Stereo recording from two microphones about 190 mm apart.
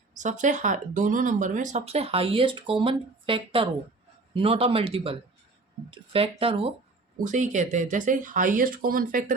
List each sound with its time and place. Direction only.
0.2 s speech: 40° right (ahead or behind)
7.3 s speech: 40° right (ahead or behind)